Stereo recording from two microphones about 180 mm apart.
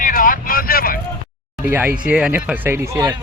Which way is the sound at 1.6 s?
10° right (ahead or behind).